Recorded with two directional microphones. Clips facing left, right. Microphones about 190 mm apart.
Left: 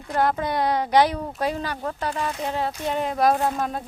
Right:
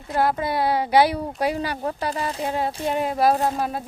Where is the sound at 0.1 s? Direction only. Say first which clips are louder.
Right 1 dB; 5° right (ahead or behind).